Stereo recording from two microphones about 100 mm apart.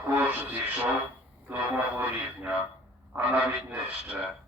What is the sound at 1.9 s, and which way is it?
Speech, 15° right (ahead or behind).